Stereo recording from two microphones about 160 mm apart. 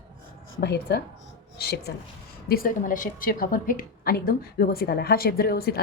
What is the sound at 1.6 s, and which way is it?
Speech, 75° left (ahead or behind).